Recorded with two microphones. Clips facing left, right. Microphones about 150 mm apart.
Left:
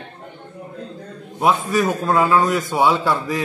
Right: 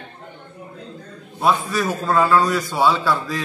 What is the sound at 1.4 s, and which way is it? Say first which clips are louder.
A man's voice: left 2 dB; 20° left (ahead or behind).